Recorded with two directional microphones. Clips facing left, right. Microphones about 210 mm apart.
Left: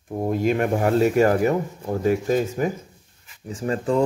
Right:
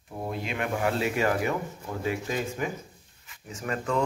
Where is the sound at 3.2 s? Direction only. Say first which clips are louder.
Left 8 dB; 30° left (ahead or behind).